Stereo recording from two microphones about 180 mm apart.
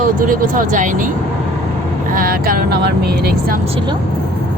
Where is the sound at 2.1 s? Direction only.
55° right (ahead or behind).